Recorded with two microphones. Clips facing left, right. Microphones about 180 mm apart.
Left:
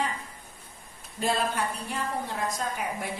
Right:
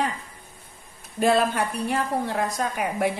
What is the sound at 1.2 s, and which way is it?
A woman's voice, 65° right (ahead or behind).